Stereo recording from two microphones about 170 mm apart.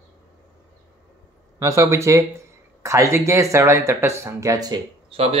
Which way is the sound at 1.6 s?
15° right (ahead or behind).